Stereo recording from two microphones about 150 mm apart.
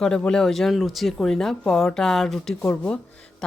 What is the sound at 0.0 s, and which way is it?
A woman's voice, 5° left (ahead or behind).